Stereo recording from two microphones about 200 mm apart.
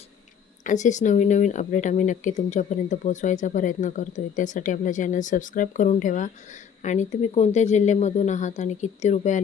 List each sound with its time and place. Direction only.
0.6 s speech: 35° left (ahead or behind)